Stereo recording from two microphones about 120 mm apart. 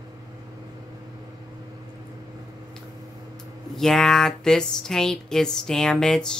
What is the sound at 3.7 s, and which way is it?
Speech, 5° left (ahead or behind).